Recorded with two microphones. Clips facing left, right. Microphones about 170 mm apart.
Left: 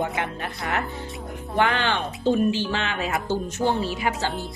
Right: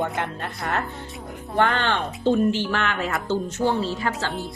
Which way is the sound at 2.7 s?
20° left (ahead or behind).